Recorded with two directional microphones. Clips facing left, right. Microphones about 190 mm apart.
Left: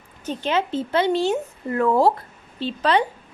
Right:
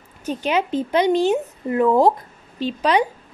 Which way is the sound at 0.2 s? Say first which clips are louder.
Right 2 dB; 10° right (ahead or behind).